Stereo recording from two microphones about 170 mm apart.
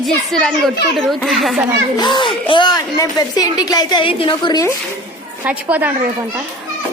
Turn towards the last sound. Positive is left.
turn(degrees=-10)  # may be behind; listen again after turning